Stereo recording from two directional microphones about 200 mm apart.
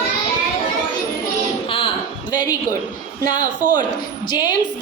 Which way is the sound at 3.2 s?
20° left (ahead or behind).